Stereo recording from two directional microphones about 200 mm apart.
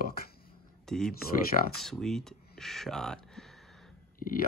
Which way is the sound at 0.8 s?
Centre (ahead or behind).